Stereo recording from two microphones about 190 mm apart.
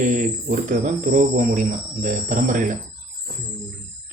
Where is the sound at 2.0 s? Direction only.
45° right (ahead or behind).